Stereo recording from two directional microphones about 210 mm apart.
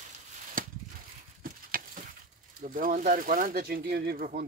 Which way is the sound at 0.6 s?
40° right (ahead or behind).